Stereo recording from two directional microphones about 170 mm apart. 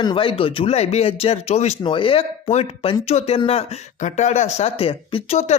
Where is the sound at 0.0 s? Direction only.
30° left (ahead or behind).